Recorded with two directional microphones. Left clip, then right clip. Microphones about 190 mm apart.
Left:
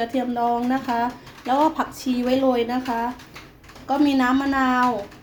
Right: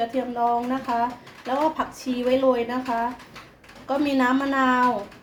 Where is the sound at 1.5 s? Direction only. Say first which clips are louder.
Left 4 dB; 20° left (ahead or behind); by 4.8 s 5° left (ahead or behind).